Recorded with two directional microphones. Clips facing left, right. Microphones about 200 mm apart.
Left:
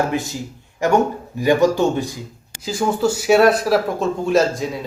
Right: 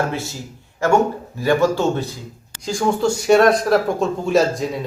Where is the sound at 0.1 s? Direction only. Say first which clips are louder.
Left 4 dB; 15° left (ahead or behind).